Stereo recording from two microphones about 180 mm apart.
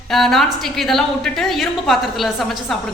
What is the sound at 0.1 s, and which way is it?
A woman's voice, centre (ahead or behind).